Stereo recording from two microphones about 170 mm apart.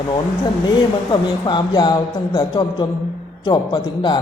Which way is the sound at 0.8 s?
25° left (ahead or behind).